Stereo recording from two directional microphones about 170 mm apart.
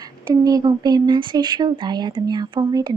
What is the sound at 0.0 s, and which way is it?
Speech, 20° right (ahead or behind).